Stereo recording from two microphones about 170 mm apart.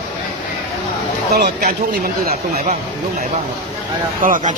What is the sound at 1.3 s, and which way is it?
Speech, 70° right (ahead or behind).